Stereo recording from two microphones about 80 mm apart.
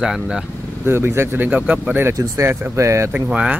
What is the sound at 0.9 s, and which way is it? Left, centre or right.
Speech, right.